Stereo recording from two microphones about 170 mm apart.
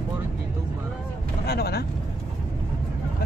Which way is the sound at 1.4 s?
70° left (ahead or behind).